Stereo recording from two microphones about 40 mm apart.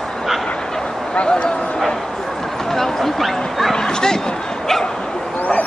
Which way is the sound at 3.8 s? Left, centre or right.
Centre.